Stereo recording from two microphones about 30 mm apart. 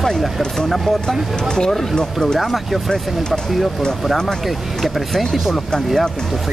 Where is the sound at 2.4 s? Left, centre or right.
Centre.